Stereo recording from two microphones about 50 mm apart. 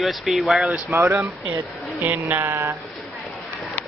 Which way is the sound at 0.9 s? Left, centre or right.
Right.